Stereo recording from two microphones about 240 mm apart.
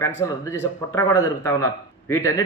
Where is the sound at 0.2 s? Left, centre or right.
Centre.